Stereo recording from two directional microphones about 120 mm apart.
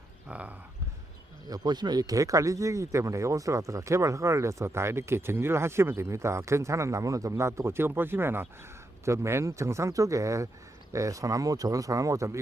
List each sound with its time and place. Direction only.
0.3 s speech: 10° right (ahead or behind)
1.5 s speech: 35° right (ahead or behind)